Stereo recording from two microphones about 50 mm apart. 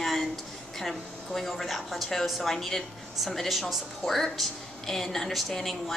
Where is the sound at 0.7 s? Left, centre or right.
Centre.